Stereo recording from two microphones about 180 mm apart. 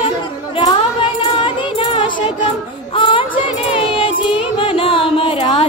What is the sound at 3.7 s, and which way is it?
Music, 30° left (ahead or behind).